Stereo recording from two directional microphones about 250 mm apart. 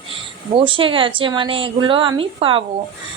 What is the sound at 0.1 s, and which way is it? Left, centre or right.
Speech, right.